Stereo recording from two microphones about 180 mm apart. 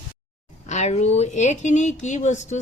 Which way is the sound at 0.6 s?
40° left (ahead or behind).